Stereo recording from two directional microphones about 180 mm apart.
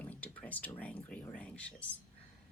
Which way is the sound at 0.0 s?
10° left (ahead or behind).